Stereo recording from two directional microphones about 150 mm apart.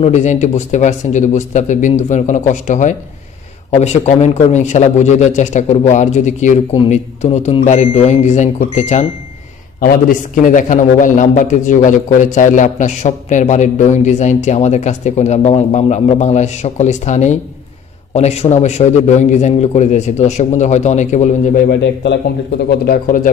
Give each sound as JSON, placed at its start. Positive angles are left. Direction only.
{"t": 0.0, "sound": "a man's voice", "side_deg": 50}
{"t": 9.8, "sound": "a man's voice", "side_deg": 75}
{"t": 22.7, "sound": "speech", "side_deg": 75}